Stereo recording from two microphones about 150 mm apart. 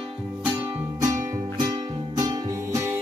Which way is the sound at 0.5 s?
10° right (ahead or behind).